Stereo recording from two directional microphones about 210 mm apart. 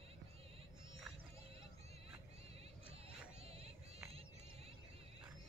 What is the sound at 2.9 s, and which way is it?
Clip-clop, 30° right (ahead or behind).